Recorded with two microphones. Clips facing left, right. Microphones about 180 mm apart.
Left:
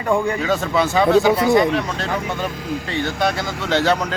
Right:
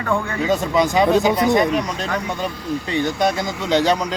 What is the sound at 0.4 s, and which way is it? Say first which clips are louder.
Speech: right 1 dB; 15° right (ahead or behind).